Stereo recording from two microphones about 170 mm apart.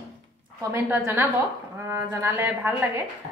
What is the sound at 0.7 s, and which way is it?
A woman's voice, 15° right (ahead or behind).